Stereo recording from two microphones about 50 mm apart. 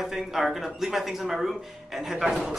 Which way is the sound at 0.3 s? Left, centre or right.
Centre.